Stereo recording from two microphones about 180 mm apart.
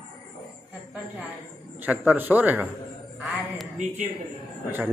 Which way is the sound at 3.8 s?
45° right (ahead or behind).